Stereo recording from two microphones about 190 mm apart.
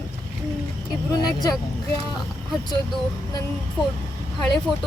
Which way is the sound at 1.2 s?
20° left (ahead or behind).